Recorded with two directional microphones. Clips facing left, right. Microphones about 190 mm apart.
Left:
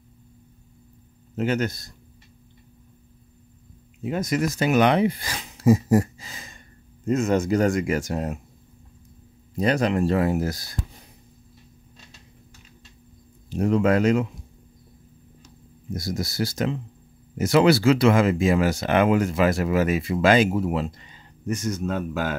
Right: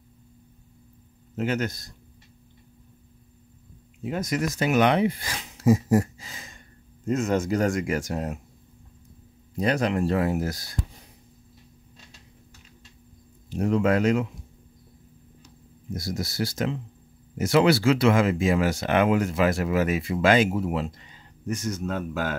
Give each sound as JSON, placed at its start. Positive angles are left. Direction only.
{"t": 1.4, "sound": "speech", "side_deg": 30}
{"t": 4.1, "sound": "speech", "side_deg": 25}
{"t": 7.2, "sound": "speech", "side_deg": 15}
{"t": 9.6, "sound": "speech", "side_deg": 35}
{"t": 13.8, "sound": "speech", "side_deg": 35}
{"t": 16.0, "sound": "speech", "side_deg": 40}
{"t": 21.5, "sound": "speech", "side_deg": 15}